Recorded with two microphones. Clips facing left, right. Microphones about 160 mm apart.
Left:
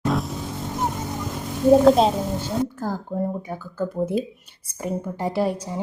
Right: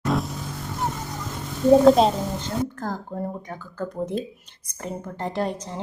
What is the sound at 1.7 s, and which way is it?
A woman's voice, 5° left (ahead or behind).